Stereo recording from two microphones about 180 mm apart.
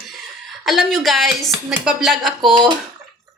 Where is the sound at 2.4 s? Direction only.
25° right (ahead or behind).